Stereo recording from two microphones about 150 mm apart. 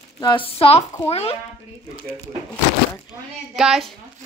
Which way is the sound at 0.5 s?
40° left (ahead or behind).